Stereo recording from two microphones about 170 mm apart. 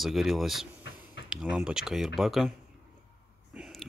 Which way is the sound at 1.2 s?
90° left.